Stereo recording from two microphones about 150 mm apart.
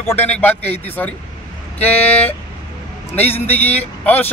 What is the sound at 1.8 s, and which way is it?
Speech, 40° left (ahead or behind).